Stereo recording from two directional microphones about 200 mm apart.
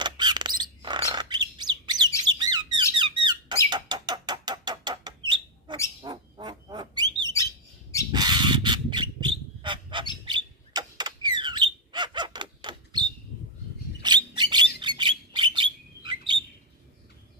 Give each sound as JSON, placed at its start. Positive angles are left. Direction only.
{"t": 0.0, "sound": "bird", "side_deg": -20}
{"t": 2.3, "sound": "squeak", "side_deg": -20}
{"t": 6.0, "sound": "bird", "side_deg": -20}
{"t": 14.0, "sound": "bird", "side_deg": -20}